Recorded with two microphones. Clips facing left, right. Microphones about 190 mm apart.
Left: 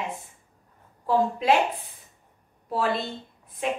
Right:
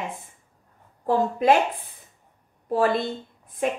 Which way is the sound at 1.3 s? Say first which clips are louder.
Right 3 dB; 50° right (ahead or behind).